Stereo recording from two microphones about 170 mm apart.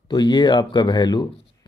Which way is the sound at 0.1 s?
25° left (ahead or behind).